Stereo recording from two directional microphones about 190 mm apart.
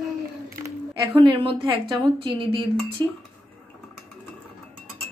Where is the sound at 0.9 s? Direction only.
25° right (ahead or behind).